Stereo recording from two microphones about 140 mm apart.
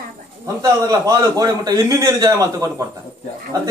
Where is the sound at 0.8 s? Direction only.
25° right (ahead or behind).